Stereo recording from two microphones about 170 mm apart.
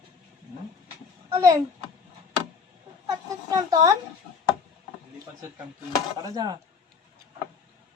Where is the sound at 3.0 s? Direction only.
20° right (ahead or behind).